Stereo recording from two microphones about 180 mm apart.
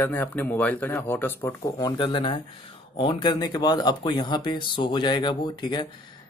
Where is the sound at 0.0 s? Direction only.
10° left (ahead or behind).